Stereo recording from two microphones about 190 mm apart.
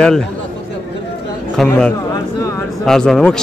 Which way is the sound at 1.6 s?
5° left (ahead or behind).